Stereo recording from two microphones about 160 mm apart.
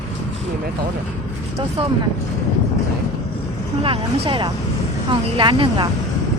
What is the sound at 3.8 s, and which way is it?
Speech, 35° right (ahead or behind).